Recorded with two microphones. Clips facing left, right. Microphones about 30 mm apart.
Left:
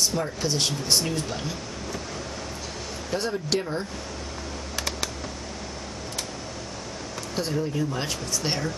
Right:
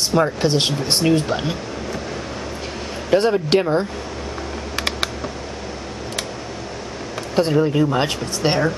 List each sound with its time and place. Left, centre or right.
0.1 s speech: right
3.1 s speech: right
4.7 s computer keyboard: right
7.5 s speech: right